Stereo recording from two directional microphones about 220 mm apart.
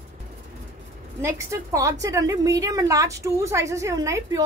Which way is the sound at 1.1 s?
15° right (ahead or behind).